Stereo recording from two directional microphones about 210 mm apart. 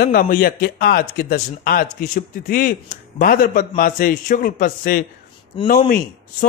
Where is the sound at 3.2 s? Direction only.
40° left (ahead or behind).